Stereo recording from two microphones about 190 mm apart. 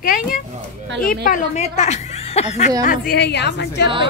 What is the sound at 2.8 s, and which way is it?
A woman's voice, 50° left (ahead or behind).